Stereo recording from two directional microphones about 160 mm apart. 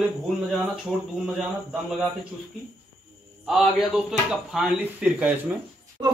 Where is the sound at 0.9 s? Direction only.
Centre (ahead or behind).